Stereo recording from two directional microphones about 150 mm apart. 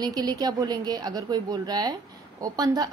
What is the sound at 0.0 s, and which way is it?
A woman's voice, 25° right (ahead or behind).